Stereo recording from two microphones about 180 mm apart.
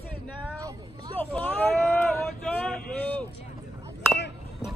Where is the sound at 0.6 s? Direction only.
20° right (ahead or behind).